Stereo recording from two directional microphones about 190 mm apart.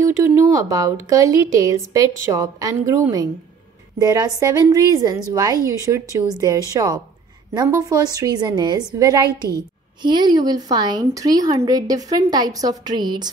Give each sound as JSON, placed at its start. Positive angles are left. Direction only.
{"t": 0.0, "sound": "a woman's voice", "side_deg": -15}